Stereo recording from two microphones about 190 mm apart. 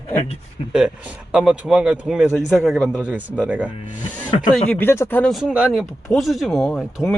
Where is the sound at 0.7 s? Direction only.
5° right (ahead or behind).